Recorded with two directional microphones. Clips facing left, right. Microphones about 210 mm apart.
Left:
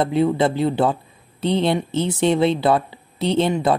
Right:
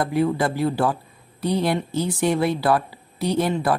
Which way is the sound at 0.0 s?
25° left (ahead or behind).